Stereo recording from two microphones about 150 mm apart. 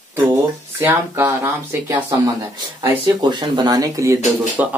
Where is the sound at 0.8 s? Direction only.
15° right (ahead or behind).